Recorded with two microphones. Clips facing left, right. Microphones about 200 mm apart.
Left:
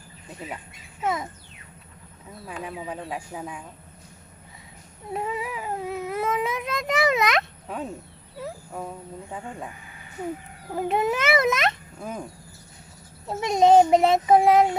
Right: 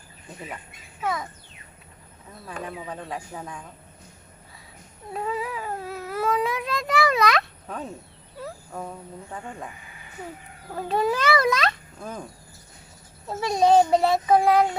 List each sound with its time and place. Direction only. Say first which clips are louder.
1.0 s speech: left 1 dB; 25° left (ahead or behind)
2.6 s speech: left 2 dB; 10° left (ahead or behind)
5.1 s speech: even; 20° left (ahead or behind)
10.8 s speech: even; 20° left (ahead or behind)
13.2 s speech: left 2 dB; 20° left (ahead or behind)